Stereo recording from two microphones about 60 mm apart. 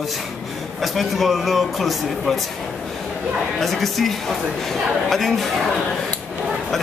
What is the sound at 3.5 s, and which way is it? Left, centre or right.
A man's voice, centre.